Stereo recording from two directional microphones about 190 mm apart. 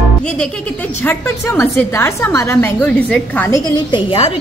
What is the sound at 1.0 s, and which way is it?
A woman's voice, 10° left (ahead or behind).